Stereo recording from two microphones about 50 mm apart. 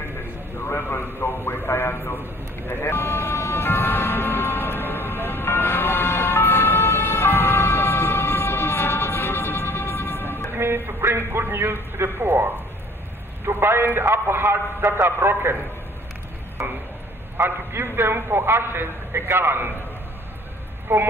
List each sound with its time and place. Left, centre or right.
0.6 s a man's voice: left
2.7 s ambulance: left
10.5 s music: right
11.1 s a man's voice: right
13.5 s a man's voice: right
17.4 s a man's voice: right
20.9 s a man's voice: right